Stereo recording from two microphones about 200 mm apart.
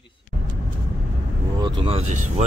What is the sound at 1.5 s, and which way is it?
Speech, 20° right (ahead or behind).